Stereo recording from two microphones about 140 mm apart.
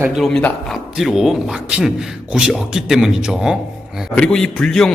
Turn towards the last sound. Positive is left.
turn(degrees=5)  # may be behind; listen again after turning